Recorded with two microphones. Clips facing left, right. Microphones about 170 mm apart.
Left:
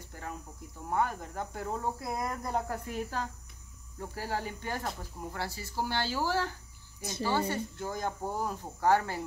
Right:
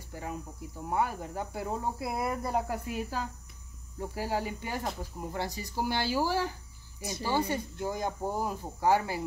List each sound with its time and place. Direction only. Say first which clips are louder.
0.1 s cricket: right 4 dB; 15° right (ahead or behind)
0.8 s speech: even; 10° right (ahead or behind)